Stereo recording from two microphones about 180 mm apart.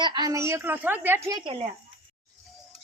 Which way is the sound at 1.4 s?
30° right (ahead or behind).